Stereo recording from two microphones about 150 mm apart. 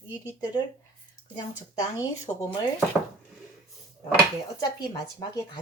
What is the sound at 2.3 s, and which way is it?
Speech, 30° left (ahead or behind).